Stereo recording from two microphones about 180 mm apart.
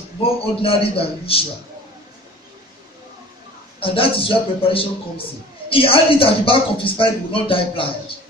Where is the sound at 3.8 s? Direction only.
30° left (ahead or behind).